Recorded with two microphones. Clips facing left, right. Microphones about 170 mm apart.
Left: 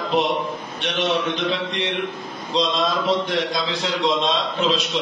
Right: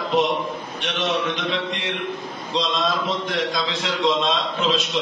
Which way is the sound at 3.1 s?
30° left (ahead or behind).